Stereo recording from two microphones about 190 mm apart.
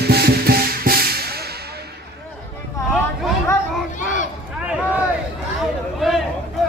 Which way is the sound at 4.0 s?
40° left (ahead or behind).